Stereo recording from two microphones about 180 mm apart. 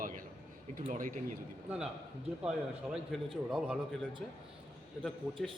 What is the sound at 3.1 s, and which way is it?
Speech, 5° left (ahead or behind).